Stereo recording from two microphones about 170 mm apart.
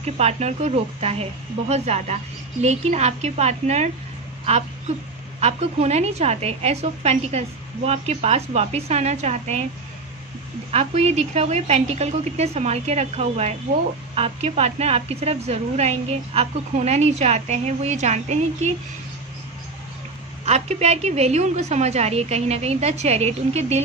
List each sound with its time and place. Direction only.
0.0 s a woman's voice: 40° right (ahead or behind)
5.4 s a woman's voice: 40° right (ahead or behind)
10.7 s a woman's voice: 40° right (ahead or behind)
20.4 s a woman's voice: 40° right (ahead or behind)